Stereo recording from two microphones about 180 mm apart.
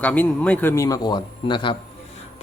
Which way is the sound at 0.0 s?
10° left (ahead or behind).